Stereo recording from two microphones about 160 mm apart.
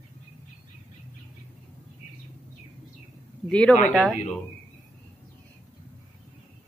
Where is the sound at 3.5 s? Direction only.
5° left (ahead or behind).